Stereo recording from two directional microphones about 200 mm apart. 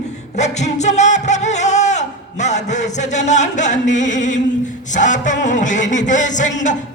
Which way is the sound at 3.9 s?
40° left (ahead or behind).